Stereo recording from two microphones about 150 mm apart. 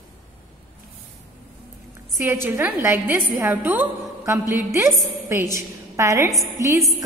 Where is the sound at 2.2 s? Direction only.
15° right (ahead or behind).